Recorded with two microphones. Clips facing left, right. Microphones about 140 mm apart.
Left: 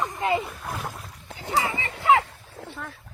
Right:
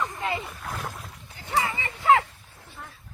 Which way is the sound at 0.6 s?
Centre (ahead or behind).